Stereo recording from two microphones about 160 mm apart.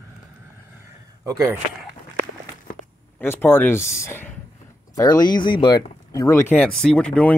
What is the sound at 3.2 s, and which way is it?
Speech, 10° left (ahead or behind).